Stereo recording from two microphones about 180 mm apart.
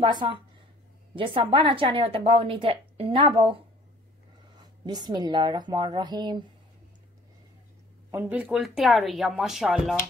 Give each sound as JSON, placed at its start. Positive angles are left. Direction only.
{"t": 0.0, "sound": "a woman's voice", "side_deg": -25}
{"t": 4.6, "sound": "a woman's voice", "side_deg": -25}
{"t": 8.1, "sound": "speech", "side_deg": -10}